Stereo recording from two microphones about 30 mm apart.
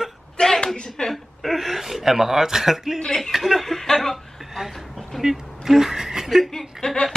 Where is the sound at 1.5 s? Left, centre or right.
Centre.